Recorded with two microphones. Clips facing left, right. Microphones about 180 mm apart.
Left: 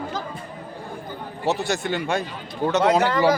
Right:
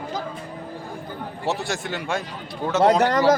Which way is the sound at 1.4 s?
Centre (ahead or behind).